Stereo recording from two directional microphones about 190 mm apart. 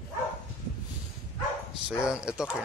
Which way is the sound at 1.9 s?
5° right (ahead or behind).